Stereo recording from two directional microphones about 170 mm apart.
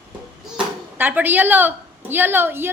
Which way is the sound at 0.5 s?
10° right (ahead or behind).